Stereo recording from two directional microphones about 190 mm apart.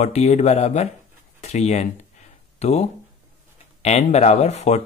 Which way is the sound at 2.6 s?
35° left (ahead or behind).